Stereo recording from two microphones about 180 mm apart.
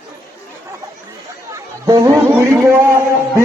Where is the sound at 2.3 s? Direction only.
10° right (ahead or behind).